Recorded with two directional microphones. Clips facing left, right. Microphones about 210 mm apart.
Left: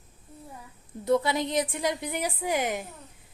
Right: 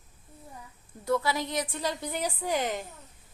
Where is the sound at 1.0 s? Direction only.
20° left (ahead or behind).